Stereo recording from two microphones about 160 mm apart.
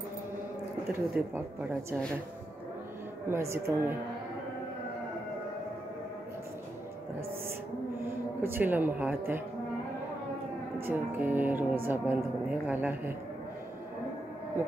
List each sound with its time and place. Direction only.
1.3 s speech: 15° right (ahead or behind)
3.3 s speech: 15° right (ahead or behind)
8.4 s speech: 15° right (ahead or behind)
10.9 s speech: 10° right (ahead or behind)